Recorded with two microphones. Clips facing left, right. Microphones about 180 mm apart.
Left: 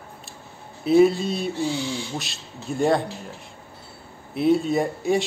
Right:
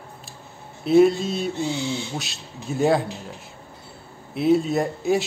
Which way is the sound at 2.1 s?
Centre (ahead or behind).